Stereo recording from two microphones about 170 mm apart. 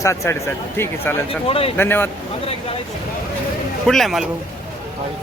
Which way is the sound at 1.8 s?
15° left (ahead or behind).